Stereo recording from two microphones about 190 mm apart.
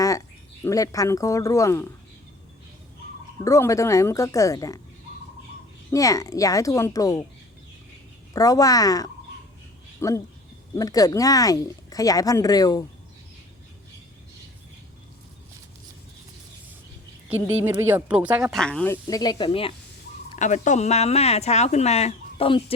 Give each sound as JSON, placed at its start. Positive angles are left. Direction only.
{"t": 0.6, "sound": "a woman's voice", "side_deg": 15}
{"t": 3.4, "sound": "a woman's voice", "side_deg": 15}
{"t": 5.9, "sound": "a woman's voice", "side_deg": 15}
{"t": 8.3, "sound": "a woman's voice", "side_deg": 20}
{"t": 17.2, "sound": "a woman's voice", "side_deg": -10}
{"t": 18.6, "sound": "speech", "side_deg": 5}
{"t": 19.0, "sound": "speech", "side_deg": 20}
{"t": 20.3, "sound": "speech", "side_deg": 40}